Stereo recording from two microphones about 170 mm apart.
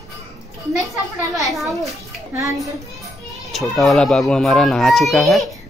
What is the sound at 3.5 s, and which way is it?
A child's voice, centre (ahead or behind).